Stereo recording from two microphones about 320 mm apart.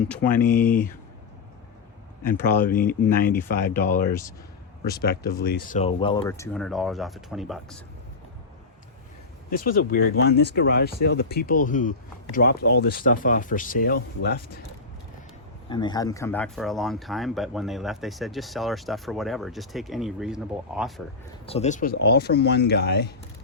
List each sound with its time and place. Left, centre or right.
0.1 s speech: centre
2.2 s speech: centre
4.8 s speech: left; by 7.8 s centre
9.5 s speech: left
15.7 s speech: centre
21.4 s speech: centre